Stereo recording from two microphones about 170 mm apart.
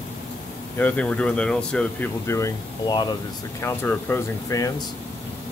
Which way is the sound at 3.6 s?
10° left (ahead or behind).